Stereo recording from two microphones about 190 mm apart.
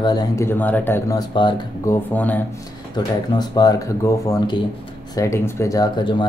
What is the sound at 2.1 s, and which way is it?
Speech, 10° left (ahead or behind).